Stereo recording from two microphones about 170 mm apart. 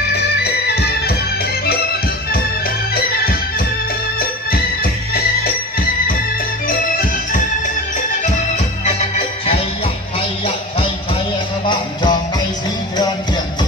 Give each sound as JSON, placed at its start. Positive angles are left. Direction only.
{"t": 0.4, "sound": "music", "side_deg": 70}
{"t": 2.9, "sound": "music", "side_deg": 60}
{"t": 6.7, "sound": "music", "side_deg": 55}
{"t": 8.8, "sound": "music", "side_deg": 40}
{"t": 11.6, "sound": "music", "side_deg": 25}